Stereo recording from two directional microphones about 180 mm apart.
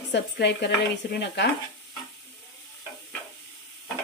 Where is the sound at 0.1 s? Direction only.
70° left (ahead or behind).